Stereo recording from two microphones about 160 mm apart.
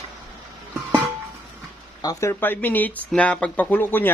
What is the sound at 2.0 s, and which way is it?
Speech, 25° left (ahead or behind).